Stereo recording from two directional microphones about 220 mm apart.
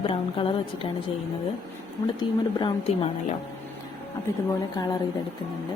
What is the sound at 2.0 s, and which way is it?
Speech, 20° left (ahead or behind).